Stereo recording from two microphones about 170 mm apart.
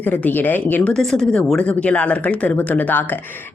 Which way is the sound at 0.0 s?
10° left (ahead or behind).